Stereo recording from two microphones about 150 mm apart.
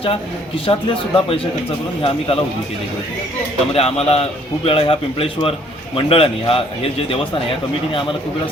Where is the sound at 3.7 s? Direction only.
45° left (ahead or behind).